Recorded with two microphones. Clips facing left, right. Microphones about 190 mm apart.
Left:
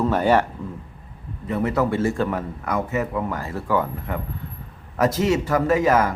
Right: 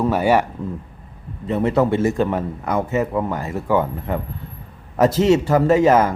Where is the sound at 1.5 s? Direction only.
25° right (ahead or behind).